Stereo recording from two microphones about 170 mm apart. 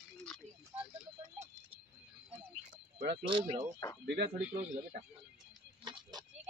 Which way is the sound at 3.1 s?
30° right (ahead or behind).